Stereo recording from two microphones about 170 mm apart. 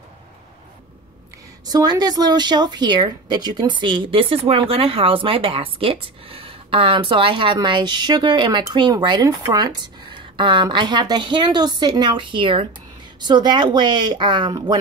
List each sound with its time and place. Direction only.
1.7 s a woman's voice: 25° right (ahead or behind)